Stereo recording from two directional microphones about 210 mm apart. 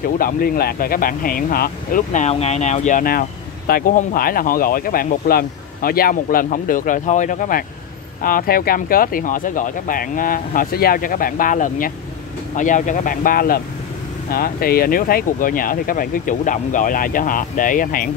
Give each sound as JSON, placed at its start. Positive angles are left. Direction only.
{"t": 0.2, "sound": "speech", "side_deg": 45}